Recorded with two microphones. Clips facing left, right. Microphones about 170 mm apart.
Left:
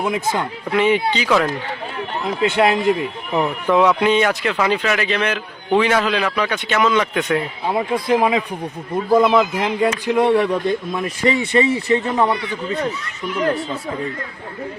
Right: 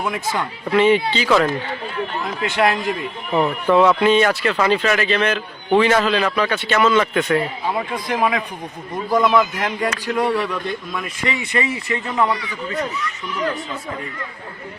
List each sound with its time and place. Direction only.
0.0 s speech: 20° left (ahead or behind)
2.2 s speech: 25° left (ahead or behind)
3.3 s speech: 10° left (ahead or behind)
7.7 s speech: 25° left (ahead or behind)